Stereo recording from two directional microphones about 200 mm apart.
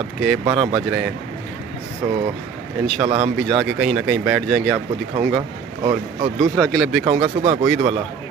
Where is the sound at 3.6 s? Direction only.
Centre (ahead or behind).